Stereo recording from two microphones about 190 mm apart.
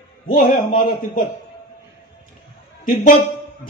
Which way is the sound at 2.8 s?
45° left (ahead or behind).